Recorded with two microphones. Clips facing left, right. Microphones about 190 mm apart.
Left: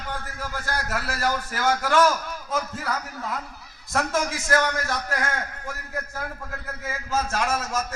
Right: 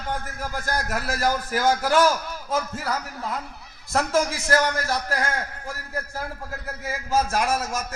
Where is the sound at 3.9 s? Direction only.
30° right (ahead or behind).